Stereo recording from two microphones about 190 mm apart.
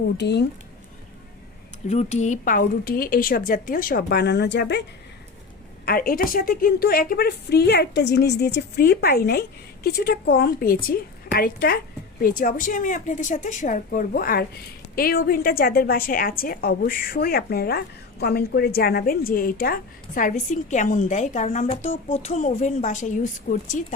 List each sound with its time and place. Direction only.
0.2 s a woman's voice: 65° left (ahead or behind)
1.9 s a woman's voice: 35° left (ahead or behind); by 4.9 s 65° left (ahead or behind)
5.8 s a woman's voice: 50° left (ahead or behind)